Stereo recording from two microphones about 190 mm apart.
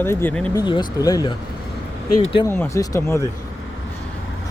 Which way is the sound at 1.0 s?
20° left (ahead or behind).